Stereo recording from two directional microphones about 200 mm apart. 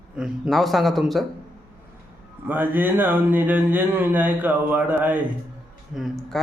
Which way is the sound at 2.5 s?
10° right (ahead or behind).